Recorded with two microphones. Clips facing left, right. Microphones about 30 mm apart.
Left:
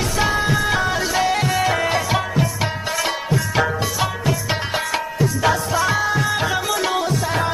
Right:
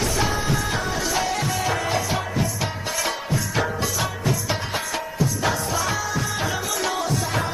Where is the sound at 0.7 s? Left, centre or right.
Left.